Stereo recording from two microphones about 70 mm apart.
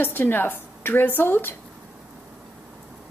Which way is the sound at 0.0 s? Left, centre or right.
Left.